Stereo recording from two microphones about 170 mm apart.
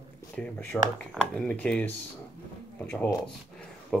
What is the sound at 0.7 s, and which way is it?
Speech, 5° left (ahead or behind).